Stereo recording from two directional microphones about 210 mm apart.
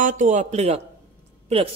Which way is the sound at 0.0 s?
35° right (ahead or behind).